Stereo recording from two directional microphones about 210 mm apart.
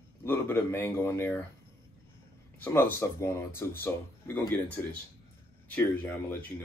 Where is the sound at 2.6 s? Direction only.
10° left (ahead or behind).